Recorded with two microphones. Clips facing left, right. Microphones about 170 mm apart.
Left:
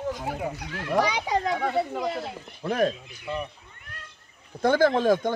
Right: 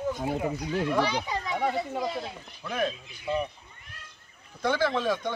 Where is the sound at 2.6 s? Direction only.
45° left (ahead or behind).